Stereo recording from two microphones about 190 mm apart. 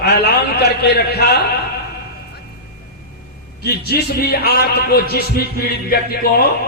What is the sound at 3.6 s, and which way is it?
A man's voice, 55° left (ahead or behind).